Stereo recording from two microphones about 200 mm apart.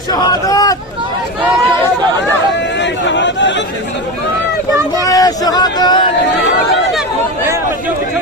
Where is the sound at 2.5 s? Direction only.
60° left (ahead or behind).